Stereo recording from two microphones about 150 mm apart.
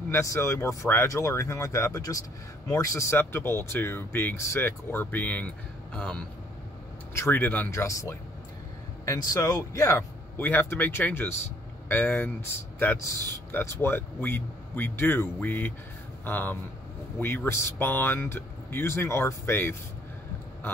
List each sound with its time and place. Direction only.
0.1 s speech: 20° left (ahead or behind)
9.3 s speech: 25° left (ahead or behind)